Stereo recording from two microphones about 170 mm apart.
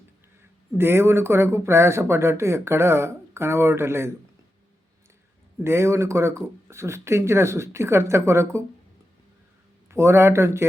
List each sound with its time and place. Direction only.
0.8 s speech: 15° right (ahead or behind)
5.6 s speech: 15° right (ahead or behind)
9.9 s speech: 15° right (ahead or behind)